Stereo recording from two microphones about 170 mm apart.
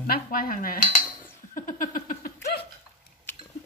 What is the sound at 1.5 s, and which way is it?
Laughter, 55° left (ahead or behind).